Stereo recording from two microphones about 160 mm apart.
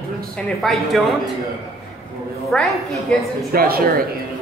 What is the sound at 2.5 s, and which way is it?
Speech, 5° left (ahead or behind).